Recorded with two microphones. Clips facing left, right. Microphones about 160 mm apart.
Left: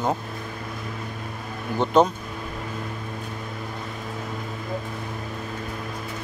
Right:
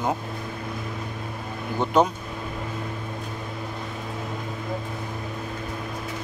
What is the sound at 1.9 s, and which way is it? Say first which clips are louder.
Speech: left 2 dB; 10° right (ahead or behind).